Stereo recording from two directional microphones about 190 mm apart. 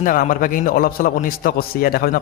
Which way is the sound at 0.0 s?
45° left (ahead or behind).